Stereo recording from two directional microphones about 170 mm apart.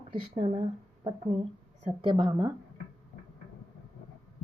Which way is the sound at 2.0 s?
25° right (ahead or behind).